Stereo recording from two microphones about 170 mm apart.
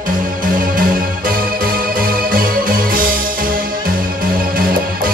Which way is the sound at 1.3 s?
60° right (ahead or behind).